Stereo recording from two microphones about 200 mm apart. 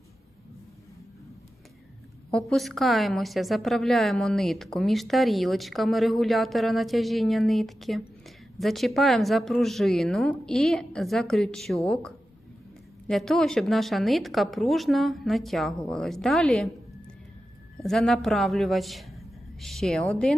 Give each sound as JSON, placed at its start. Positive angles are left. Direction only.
{"t": 2.3, "sound": "a woman's voice", "side_deg": 0}
{"t": 17.8, "sound": "a woman's voice", "side_deg": 0}